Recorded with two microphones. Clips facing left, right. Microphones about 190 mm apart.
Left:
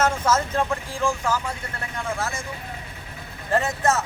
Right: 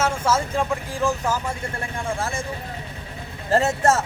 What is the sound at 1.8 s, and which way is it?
Speech, 30° right (ahead or behind).